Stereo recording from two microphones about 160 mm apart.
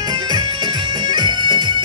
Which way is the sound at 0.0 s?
25° right (ahead or behind).